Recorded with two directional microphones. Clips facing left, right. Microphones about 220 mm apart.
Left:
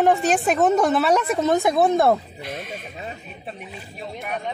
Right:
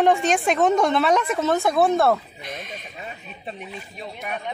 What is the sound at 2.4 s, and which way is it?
Speech, 5° left (ahead or behind).